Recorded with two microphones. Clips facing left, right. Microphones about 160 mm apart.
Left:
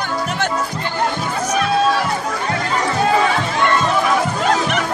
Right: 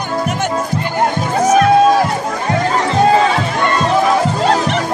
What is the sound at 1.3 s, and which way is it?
Music, 50° right (ahead or behind).